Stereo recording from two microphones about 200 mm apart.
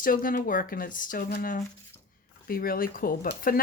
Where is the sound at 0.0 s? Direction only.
45° left (ahead or behind).